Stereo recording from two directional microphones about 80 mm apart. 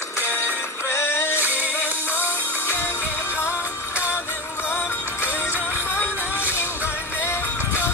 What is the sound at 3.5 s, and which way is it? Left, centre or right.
Music, centre.